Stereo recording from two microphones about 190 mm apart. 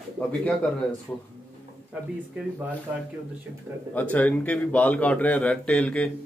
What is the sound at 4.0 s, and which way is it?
A man's voice, 10° left (ahead or behind).